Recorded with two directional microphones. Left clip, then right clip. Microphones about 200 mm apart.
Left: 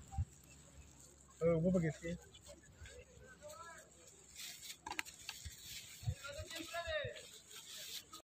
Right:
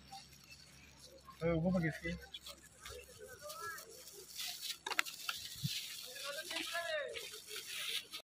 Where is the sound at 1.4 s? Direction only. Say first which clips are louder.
Left 2 dB; 45° left (ahead or behind).